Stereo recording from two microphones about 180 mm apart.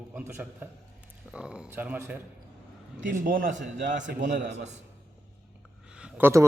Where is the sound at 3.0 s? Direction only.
50° right (ahead or behind).